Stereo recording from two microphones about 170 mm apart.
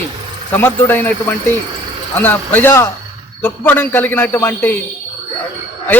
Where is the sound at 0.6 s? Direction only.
10° left (ahead or behind).